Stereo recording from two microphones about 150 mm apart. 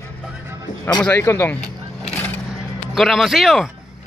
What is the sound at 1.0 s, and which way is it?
Speech, 15° left (ahead or behind).